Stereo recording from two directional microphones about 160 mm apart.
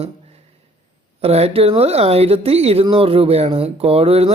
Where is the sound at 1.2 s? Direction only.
40° right (ahead or behind).